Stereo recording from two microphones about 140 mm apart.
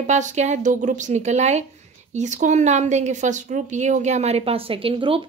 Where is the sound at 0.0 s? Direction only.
55° right (ahead or behind); by 5.2 s 40° right (ahead or behind).